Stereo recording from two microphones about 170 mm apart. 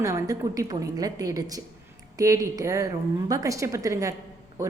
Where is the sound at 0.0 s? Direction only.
20° right (ahead or behind).